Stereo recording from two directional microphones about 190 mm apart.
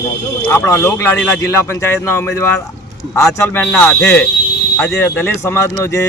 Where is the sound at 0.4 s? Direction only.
10° left (ahead or behind).